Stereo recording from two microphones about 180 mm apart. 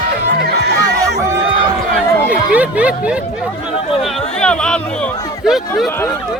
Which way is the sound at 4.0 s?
5° left (ahead or behind).